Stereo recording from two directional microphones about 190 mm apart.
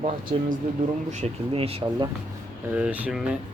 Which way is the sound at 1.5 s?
30° right (ahead or behind).